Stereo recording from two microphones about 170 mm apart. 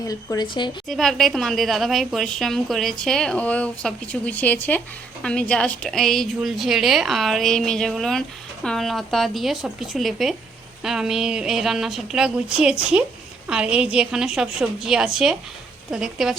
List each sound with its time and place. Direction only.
0.1 s speech: 20° left (ahead or behind)
0.9 s a woman's voice: centre (ahead or behind)